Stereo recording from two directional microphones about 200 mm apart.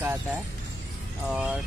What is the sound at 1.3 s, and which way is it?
Speech, 5° right (ahead or behind).